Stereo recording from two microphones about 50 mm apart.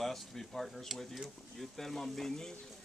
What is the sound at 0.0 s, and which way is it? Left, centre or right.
Speech, centre.